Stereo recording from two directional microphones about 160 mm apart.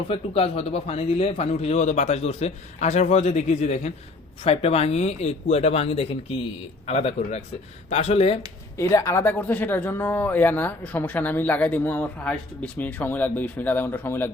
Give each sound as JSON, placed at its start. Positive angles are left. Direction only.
{"t": 0.1, "sound": "a man's voice", "side_deg": 40}
{"t": 8.8, "sound": "speech", "side_deg": 20}